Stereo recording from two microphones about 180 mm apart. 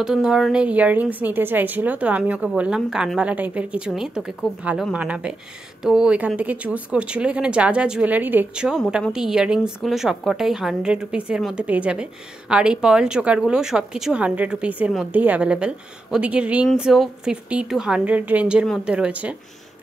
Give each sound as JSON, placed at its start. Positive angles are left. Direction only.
{"t": 0.0, "sound": "a woman's voice", "side_deg": -5}